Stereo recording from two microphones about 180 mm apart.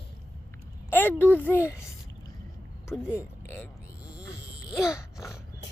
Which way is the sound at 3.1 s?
10° left (ahead or behind).